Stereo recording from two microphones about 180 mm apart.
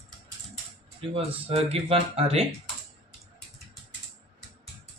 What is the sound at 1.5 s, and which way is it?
Speech, 35° right (ahead or behind).